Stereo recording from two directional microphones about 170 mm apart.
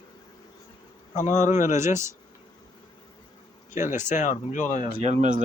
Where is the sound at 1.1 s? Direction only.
45° left (ahead or behind).